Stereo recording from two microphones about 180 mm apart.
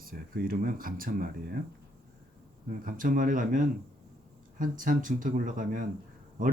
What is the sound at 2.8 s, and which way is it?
Speech, 50° right (ahead or behind).